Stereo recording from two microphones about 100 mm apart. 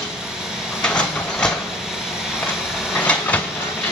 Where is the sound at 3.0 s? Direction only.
15° left (ahead or behind).